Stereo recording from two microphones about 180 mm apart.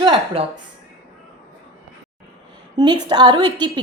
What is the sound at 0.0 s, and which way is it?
Speech, 25° right (ahead or behind).